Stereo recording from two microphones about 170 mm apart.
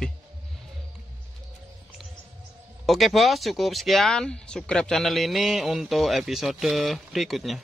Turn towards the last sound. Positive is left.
turn(degrees=0)  # may be behind; listen again after turning